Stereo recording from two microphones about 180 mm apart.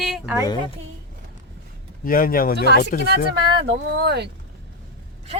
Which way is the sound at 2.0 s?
50° left (ahead or behind).